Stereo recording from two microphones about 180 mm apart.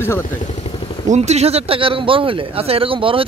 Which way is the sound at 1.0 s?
40° right (ahead or behind).